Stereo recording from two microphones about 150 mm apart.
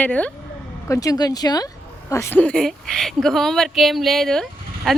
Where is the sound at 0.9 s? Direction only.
25° left (ahead or behind).